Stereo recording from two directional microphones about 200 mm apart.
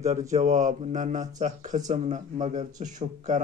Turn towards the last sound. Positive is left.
turn(degrees=-35)  # may be behind; listen again after turning